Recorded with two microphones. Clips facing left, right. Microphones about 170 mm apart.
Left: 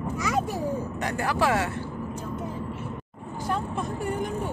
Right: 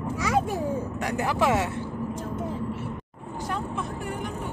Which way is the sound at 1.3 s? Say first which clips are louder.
Right 1 dB; 20° right (ahead or behind).